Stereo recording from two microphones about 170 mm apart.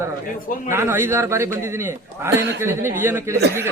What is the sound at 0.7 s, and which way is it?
Speech, 15° right (ahead or behind).